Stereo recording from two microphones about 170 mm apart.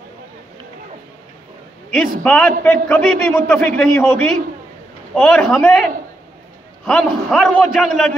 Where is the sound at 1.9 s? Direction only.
5° left (ahead or behind).